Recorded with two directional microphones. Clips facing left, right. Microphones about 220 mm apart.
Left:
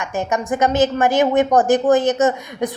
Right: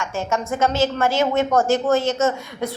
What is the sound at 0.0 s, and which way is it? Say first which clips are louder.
A woman's voice: left 2 dB; 15° left (ahead or behind).